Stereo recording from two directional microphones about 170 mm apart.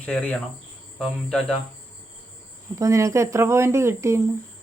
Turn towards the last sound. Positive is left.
turn(degrees=-15)  # may be behind; listen again after turning